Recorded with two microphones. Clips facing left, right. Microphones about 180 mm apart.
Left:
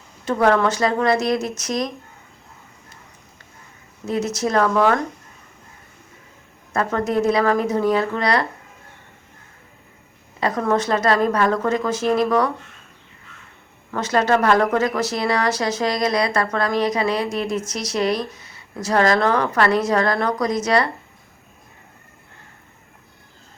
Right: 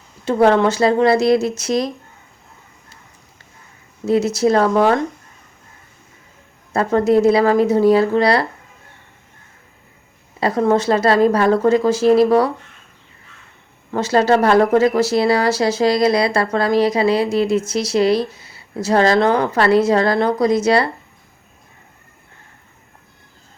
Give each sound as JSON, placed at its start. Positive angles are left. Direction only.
{"t": 0.3, "sound": "speech", "side_deg": -30}
{"t": 4.0, "sound": "a woman's voice", "side_deg": -30}
{"t": 6.7, "sound": "a woman's voice", "side_deg": -30}
{"t": 10.4, "sound": "a woman's voice", "side_deg": -30}
{"t": 13.9, "sound": "speech", "side_deg": -30}